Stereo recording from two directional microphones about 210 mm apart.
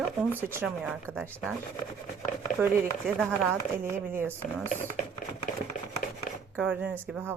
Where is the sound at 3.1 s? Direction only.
10° right (ahead or behind).